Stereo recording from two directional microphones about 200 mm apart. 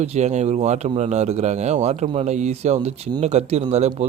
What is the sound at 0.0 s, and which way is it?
A man's voice, 35° right (ahead or behind).